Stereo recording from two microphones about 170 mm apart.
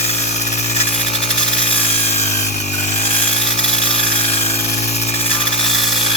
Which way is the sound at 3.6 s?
35° left (ahead or behind).